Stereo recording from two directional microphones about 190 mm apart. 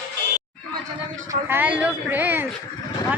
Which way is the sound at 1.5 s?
10° right (ahead or behind).